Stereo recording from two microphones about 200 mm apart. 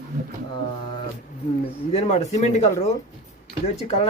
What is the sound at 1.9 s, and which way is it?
Speech, 35° left (ahead or behind).